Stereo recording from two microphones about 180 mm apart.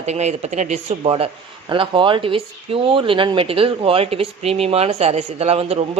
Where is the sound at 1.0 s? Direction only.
25° right (ahead or behind).